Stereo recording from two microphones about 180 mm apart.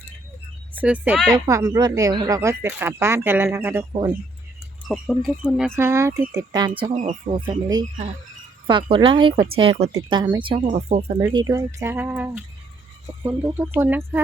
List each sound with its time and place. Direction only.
0.7 s a woman's voice: 10° right (ahead or behind)
1.3 s speech: 20° right (ahead or behind)
4.9 s speech: centre (ahead or behind)
5.7 s speech: 15° right (ahead or behind)
7.0 s speech: 40° right (ahead or behind)
8.6 s speech: 25° right (ahead or behind)
11.2 s speech: 20° right (ahead or behind)
13.4 s speech: 10° right (ahead or behind)